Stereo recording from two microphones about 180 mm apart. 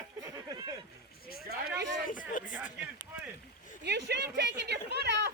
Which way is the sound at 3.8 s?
70° right (ahead or behind).